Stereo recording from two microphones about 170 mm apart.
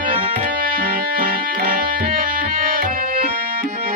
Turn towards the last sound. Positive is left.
turn(degrees=-60)  # may be behind; listen again after turning